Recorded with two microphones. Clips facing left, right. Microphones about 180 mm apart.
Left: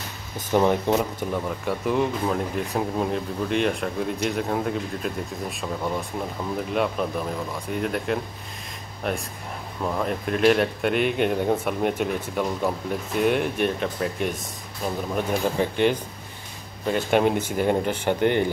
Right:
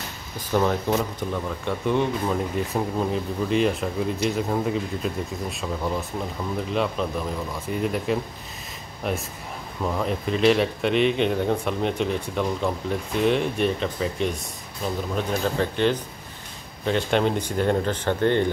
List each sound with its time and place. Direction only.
0.5 s speech: 20° left (ahead or behind)
1.6 s speech: 5° left (ahead or behind)
15.1 s speech: 15° left (ahead or behind)